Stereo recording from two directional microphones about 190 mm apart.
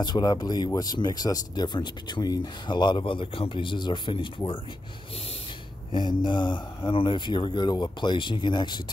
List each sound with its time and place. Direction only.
0.0 s speech: 20° left (ahead or behind)
5.9 s speech: 25° left (ahead or behind)